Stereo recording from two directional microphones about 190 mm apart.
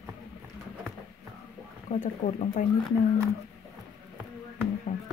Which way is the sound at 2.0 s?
40° left (ahead or behind).